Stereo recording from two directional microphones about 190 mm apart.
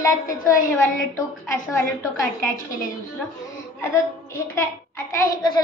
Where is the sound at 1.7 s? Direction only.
15° left (ahead or behind).